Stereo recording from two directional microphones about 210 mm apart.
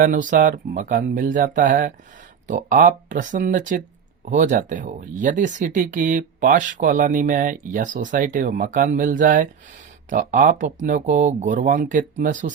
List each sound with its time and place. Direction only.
0.0 s speech: 40° right (ahead or behind)